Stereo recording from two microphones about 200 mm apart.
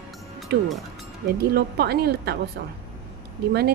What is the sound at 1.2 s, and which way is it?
Speech, 50° right (ahead or behind).